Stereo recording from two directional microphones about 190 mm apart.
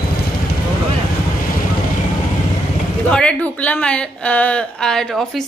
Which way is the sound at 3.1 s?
5° left (ahead or behind).